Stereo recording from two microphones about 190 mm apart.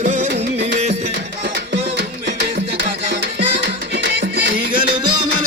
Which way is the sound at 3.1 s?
65° right (ahead or behind).